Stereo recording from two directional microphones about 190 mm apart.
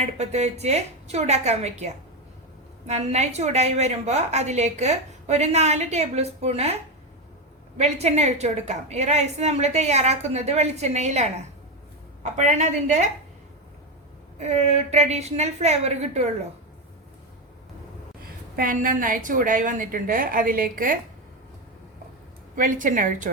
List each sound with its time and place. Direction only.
0.0 s a woman's voice: 35° right (ahead or behind)
7.8 s a woman's voice: 35° right (ahead or behind)
14.3 s a woman's voice: 35° right (ahead or behind)
18.5 s a woman's voice: 45° right (ahead or behind)
22.5 s a woman's voice: 45° right (ahead or behind)